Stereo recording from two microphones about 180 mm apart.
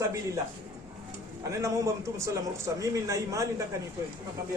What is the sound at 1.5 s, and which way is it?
A man's voice, 15° right (ahead or behind).